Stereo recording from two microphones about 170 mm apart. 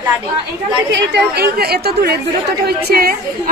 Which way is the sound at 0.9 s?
80° right.